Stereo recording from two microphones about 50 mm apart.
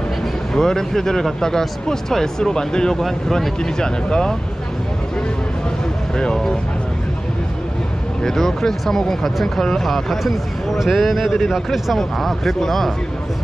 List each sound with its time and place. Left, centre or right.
0.6 s speech: centre
6.1 s speech: centre
8.2 s speech: centre